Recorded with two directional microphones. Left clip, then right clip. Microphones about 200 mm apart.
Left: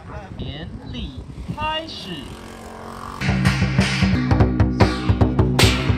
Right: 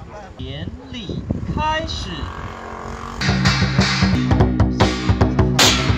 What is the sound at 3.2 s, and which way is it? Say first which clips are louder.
Music: right 4 dB; 20° left (ahead or behind).